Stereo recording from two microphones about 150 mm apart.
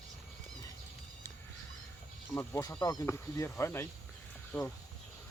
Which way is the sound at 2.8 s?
20° left (ahead or behind).